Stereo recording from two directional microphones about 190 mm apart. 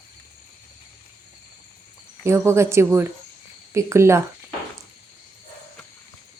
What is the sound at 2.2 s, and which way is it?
Speech, 15° right (ahead or behind).